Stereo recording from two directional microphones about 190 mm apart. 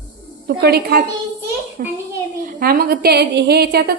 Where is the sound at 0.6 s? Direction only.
55° right (ahead or behind).